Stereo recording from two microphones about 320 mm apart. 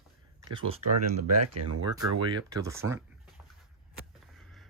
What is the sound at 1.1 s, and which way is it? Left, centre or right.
Speech, right.